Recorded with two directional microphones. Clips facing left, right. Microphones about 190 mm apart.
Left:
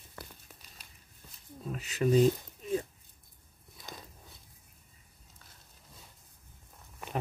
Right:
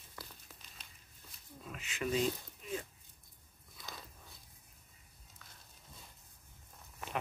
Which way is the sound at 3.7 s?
20° left (ahead or behind).